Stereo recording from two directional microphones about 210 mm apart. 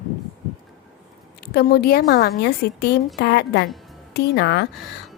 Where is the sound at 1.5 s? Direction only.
50° left (ahead or behind).